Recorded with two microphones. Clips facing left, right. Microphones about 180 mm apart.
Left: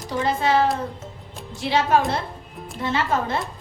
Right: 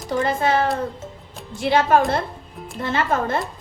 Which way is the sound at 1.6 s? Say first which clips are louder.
Right 3 dB; 50° right (ahead or behind).